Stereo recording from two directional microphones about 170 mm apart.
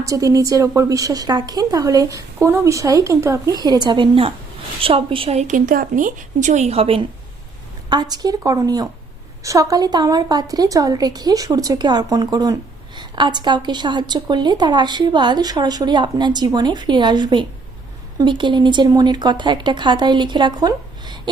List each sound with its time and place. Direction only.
0.0 s a woman's voice: 20° right (ahead or behind); by 7.0 s 35° right (ahead or behind)
7.9 s a woman's voice: 25° right (ahead or behind)